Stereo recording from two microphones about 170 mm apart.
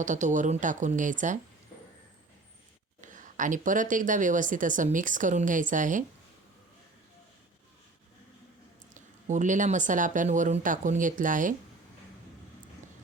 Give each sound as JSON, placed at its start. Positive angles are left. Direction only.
{"t": 0.0, "sound": "speech", "side_deg": -45}
{"t": 3.0, "sound": "speech", "side_deg": -50}
{"t": 9.0, "sound": "speech", "side_deg": -45}